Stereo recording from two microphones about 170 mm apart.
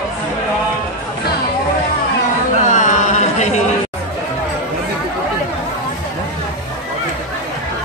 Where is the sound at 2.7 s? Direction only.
45° left (ahead or behind).